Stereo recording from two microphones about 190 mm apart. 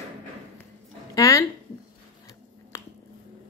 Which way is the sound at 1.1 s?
15° left (ahead or behind).